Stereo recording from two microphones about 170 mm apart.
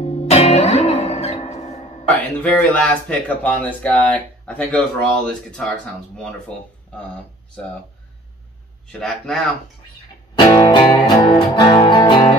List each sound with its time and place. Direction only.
0.0 s music: 35° left (ahead or behind)
2.1 s speech: 10° left (ahead or behind)
9.0 s speech: 5° left (ahead or behind)
10.3 s music: 25° left (ahead or behind)